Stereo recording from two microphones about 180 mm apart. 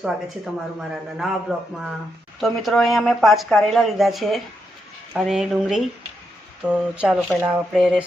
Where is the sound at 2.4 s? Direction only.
Centre (ahead or behind).